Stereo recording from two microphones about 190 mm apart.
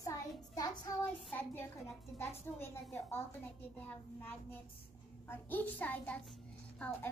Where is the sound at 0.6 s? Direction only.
15° left (ahead or behind).